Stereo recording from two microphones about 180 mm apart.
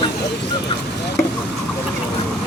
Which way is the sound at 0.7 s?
30° left (ahead or behind).